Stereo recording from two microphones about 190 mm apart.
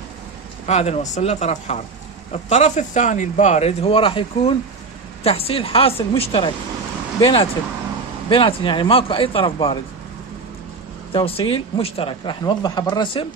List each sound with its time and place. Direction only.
0.7 s a man's voice: 35° left (ahead or behind)
11.1 s a man's voice: 30° left (ahead or behind)